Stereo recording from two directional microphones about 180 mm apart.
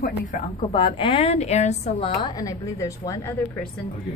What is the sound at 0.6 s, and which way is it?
A woman's voice, 25° left (ahead or behind).